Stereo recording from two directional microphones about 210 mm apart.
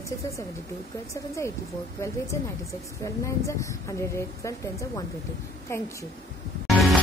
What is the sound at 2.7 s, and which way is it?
A woman's voice, 15° left (ahead or behind).